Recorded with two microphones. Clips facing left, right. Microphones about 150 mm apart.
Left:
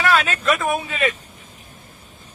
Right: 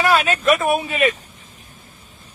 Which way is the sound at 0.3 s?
20° right (ahead or behind).